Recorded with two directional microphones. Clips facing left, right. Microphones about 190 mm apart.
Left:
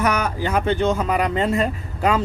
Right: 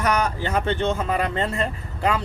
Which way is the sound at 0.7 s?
40° left (ahead or behind).